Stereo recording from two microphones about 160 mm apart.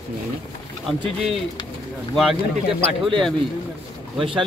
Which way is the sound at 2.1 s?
Centre (ahead or behind).